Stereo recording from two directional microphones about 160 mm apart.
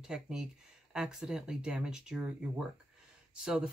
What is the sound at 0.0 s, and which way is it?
Speech, 5° right (ahead or behind).